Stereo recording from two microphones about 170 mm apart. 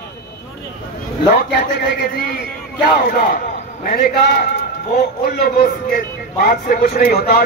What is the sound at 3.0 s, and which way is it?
Speech, 60° left (ahead or behind).